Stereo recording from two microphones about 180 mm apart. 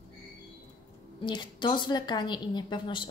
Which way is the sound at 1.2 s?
25° left (ahead or behind).